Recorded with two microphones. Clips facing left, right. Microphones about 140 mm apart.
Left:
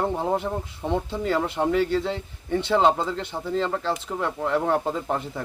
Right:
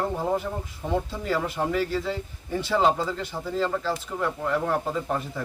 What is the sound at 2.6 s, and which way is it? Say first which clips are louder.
Speech: left 2 dB; 25° left (ahead or behind).